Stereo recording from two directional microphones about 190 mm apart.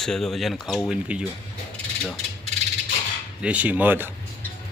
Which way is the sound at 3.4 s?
5° right (ahead or behind).